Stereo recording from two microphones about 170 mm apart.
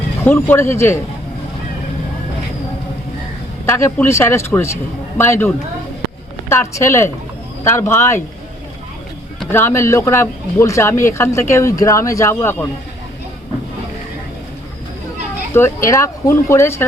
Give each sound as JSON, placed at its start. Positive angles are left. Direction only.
{"t": 0.3, "sound": "speech", "side_deg": 15}
{"t": 3.7, "sound": "speech", "side_deg": 15}
{"t": 9.5, "sound": "speech", "side_deg": 15}
{"t": 15.5, "sound": "speech", "side_deg": 15}